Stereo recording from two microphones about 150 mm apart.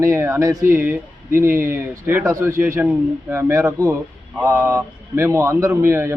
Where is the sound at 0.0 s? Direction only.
20° right (ahead or behind).